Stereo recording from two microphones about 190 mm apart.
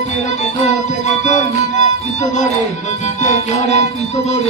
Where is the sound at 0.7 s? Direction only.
40° left (ahead or behind).